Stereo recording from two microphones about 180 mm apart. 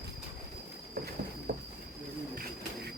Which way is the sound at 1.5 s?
65° right (ahead or behind).